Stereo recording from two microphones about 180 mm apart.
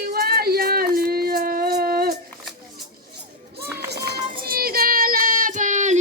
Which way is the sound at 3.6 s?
10° right (ahead or behind).